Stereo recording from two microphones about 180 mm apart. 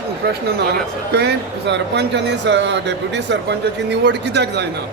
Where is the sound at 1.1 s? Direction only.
65° right (ahead or behind).